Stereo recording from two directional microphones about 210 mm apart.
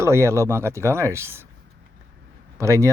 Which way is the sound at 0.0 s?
15° right (ahead or behind).